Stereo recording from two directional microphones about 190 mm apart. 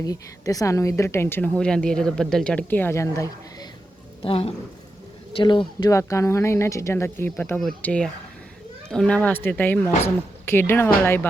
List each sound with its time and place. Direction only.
0.0 s a woman's voice: 20° left (ahead or behind)
4.2 s a woman's voice: 30° left (ahead or behind); by 11.3 s 10° left (ahead or behind)